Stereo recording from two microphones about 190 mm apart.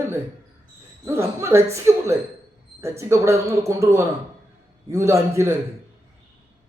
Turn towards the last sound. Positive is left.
turn(degrees=-15)  # may be behind; listen again after turning